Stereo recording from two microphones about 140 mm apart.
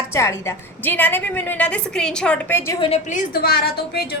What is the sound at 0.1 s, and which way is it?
A woman's voice, 20° left (ahead or behind).